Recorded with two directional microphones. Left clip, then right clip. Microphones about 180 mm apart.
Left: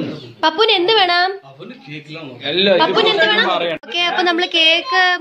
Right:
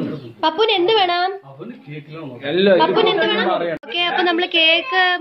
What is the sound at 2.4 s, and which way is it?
Speech, 45° right (ahead or behind).